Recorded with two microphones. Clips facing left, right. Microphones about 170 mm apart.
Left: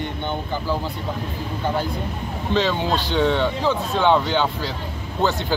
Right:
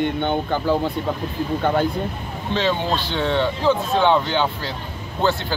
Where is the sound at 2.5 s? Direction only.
Centre (ahead or behind).